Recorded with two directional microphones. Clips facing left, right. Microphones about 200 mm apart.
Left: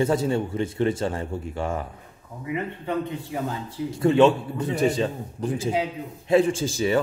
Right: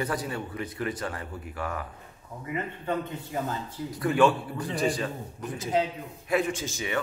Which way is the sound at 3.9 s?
25° left (ahead or behind).